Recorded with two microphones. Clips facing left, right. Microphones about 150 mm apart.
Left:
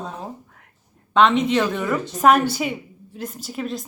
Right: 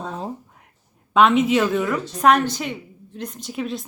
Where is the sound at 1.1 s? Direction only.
5° right (ahead or behind).